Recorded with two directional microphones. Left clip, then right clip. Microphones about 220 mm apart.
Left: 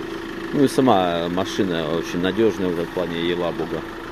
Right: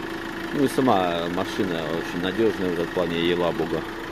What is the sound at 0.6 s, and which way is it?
Speech, 25° left (ahead or behind).